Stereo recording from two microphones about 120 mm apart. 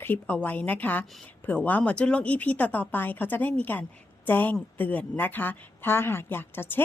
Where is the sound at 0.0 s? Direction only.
15° left (ahead or behind).